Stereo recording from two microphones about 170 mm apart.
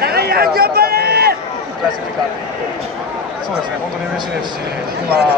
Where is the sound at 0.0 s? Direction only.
65° right (ahead or behind).